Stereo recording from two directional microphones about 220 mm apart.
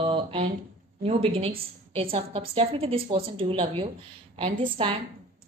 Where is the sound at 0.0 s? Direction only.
25° right (ahead or behind).